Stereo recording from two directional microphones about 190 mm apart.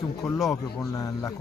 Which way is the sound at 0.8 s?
15° left (ahead or behind).